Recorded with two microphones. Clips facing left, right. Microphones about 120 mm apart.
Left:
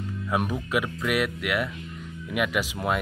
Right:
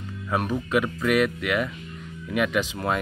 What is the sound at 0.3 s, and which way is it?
A man's voice, 10° left (ahead or behind).